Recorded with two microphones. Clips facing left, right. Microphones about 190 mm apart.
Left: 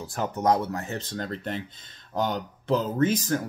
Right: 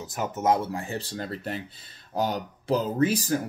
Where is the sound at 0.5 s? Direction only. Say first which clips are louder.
Even; 30° right (ahead or behind).